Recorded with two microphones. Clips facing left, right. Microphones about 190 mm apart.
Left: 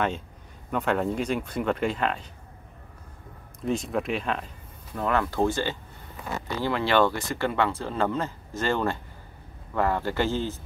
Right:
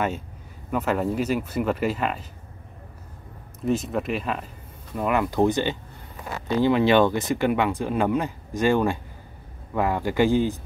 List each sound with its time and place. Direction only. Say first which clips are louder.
0.7 s speech: right 2 dB; 5° right (ahead or behind)
3.6 s speech: right 3 dB; centre (ahead or behind)